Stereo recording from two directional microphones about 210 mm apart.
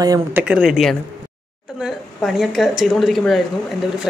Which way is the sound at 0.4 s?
5° right (ahead or behind).